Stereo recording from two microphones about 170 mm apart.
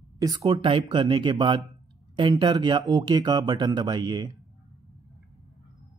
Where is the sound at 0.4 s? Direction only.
30° right (ahead or behind).